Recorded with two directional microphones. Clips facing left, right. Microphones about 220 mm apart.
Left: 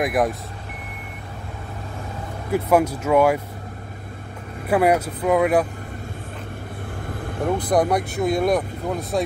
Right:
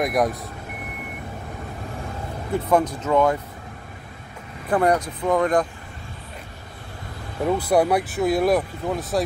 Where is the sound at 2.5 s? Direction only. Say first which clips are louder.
Left 2 dB; 10° left (ahead or behind).